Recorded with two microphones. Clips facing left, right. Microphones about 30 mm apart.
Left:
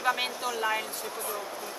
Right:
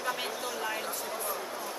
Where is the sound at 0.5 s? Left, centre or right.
Left.